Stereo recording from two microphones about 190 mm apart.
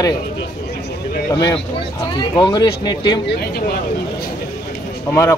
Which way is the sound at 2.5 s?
20° left (ahead or behind).